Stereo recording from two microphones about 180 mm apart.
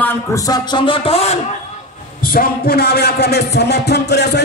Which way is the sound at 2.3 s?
55° left (ahead or behind).